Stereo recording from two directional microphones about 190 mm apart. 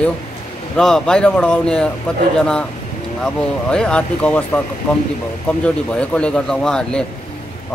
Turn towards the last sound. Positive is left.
turn(degrees=5)  # may be behind; listen again after turning